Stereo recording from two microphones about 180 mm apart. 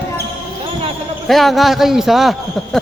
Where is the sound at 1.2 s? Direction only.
Centre (ahead or behind).